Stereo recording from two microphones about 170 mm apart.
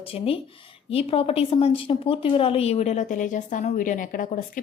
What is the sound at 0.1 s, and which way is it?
A woman's voice, 35° left (ahead or behind).